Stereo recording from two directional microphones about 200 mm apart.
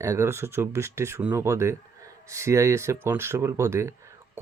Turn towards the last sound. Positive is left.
turn(degrees=-15)  # may be behind; listen again after turning